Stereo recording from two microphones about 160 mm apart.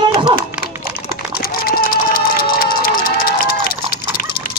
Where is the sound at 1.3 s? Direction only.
65° left (ahead or behind).